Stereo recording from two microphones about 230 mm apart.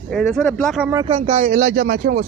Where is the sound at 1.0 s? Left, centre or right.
Right.